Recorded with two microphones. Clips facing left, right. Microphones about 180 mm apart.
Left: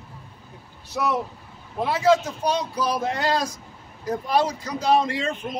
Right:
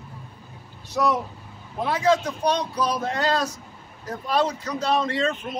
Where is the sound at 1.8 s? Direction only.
10° left (ahead or behind).